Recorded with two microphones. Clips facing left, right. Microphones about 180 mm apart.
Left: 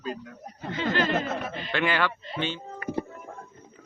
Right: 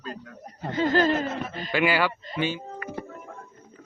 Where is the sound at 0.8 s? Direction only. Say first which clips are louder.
Right 5 dB; 40° right (ahead or behind).